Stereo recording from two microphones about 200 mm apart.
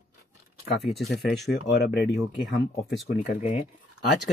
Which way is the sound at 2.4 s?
Centre (ahead or behind).